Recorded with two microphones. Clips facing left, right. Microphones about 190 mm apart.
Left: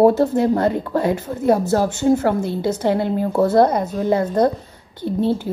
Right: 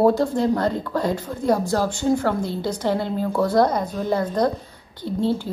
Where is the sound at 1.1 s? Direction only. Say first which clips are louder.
Left 3 dB; 25° left (ahead or behind).